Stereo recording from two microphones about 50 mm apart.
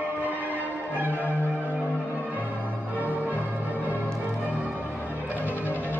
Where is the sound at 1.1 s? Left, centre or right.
Left.